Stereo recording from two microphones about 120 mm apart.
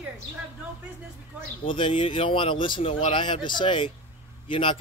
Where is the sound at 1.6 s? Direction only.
45° left (ahead or behind).